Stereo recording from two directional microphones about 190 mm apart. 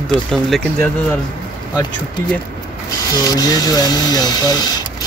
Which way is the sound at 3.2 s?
20° left (ahead or behind).